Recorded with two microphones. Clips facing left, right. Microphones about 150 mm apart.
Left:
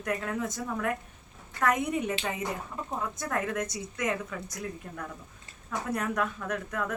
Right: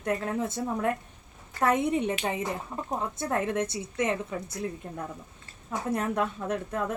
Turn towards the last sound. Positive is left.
turn(degrees=-25)  # may be behind; listen again after turning